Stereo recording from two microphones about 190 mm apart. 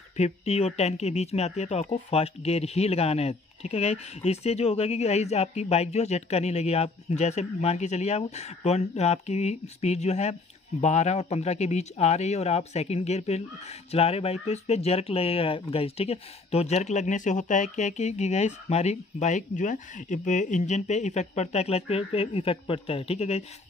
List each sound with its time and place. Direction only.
0.2 s speech: 35° left (ahead or behind)